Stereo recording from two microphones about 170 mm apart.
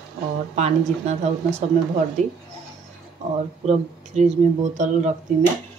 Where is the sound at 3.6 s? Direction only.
40° right (ahead or behind).